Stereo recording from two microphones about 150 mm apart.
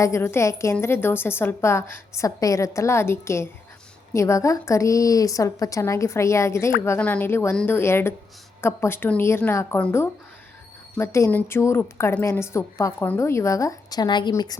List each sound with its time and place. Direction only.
0.0 s a woman's voice: 15° left (ahead or behind)